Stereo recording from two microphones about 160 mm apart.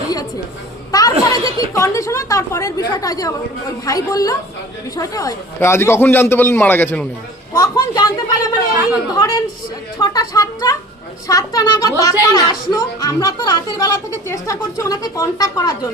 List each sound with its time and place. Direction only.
0.9 s a sound: 25° left (ahead or behind)
1.7 s a woman's voice: 20° left (ahead or behind)
7.5 s a woman's voice: 25° left (ahead or behind)